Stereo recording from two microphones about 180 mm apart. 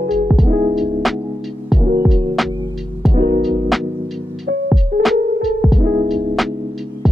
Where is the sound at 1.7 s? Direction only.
Centre (ahead or behind).